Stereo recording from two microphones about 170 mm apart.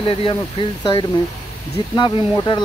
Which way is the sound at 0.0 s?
30° left (ahead or behind).